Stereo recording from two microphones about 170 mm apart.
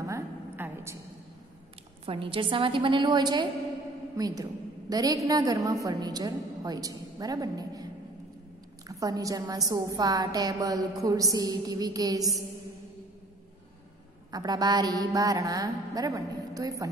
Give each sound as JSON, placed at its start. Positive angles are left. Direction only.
{"t": 0.0, "sound": "a sound", "side_deg": -15}
{"t": 2.0, "sound": "a woman's voice", "side_deg": -30}
{"t": 9.0, "sound": "a woman's voice", "side_deg": -20}
{"t": 14.3, "sound": "a woman's voice", "side_deg": -25}